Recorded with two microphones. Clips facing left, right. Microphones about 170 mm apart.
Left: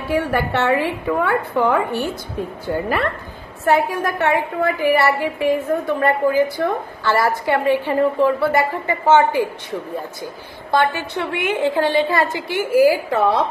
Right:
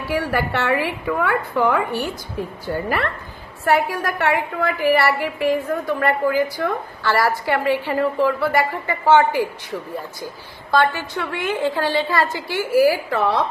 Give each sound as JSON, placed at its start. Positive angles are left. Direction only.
{"t": 0.1, "sound": "a woman's voice", "side_deg": 25}